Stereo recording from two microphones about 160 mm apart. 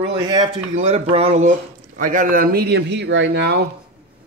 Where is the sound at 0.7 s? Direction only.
40° right (ahead or behind).